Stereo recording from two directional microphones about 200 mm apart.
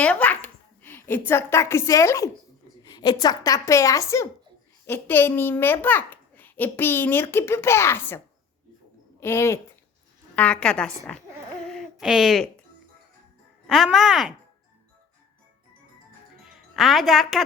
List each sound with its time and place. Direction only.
0.0 s a sound: 5° left (ahead or behind)
2.9 s a child's voice: 20° left (ahead or behind)
9.2 s a child's voice: 15° left (ahead or behind)
11.6 s a sound: centre (ahead or behind)
13.7 s a woman's voice: centre (ahead or behind)
16.4 s music: centre (ahead or behind)